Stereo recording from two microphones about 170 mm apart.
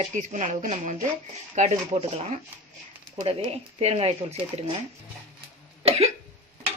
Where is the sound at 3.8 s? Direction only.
35° right (ahead or behind).